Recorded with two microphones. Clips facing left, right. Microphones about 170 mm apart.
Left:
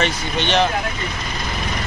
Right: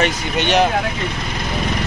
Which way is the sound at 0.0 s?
10° right (ahead or behind).